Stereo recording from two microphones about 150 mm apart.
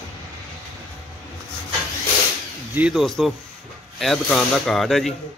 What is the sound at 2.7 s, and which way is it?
Speech, 10° right (ahead or behind).